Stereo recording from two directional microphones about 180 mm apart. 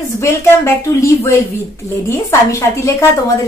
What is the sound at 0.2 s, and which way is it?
A woman's voice, 15° left (ahead or behind).